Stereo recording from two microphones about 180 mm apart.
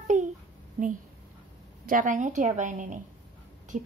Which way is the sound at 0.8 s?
40° right (ahead or behind).